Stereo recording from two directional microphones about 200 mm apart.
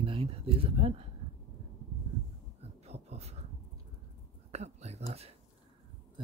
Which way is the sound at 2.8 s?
30° right (ahead or behind).